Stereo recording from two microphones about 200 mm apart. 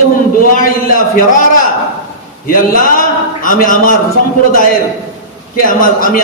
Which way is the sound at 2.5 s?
45° left (ahead or behind).